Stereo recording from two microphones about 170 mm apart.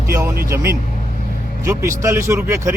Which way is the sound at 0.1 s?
20° right (ahead or behind).